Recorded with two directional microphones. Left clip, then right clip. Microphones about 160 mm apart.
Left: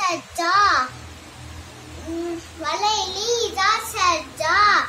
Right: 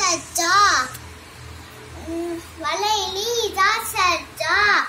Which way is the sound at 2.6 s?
Centre (ahead or behind).